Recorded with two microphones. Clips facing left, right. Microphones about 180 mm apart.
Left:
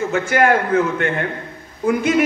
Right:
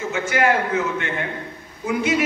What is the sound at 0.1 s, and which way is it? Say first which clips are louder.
Speech: left 4 dB; 55° left (ahead or behind).